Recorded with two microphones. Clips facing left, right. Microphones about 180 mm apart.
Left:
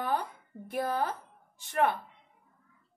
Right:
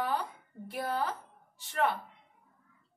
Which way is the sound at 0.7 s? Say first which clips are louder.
Left 3 dB; 50° left (ahead or behind).